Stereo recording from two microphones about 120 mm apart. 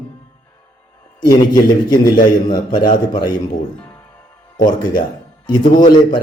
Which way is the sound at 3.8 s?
20° left (ahead or behind).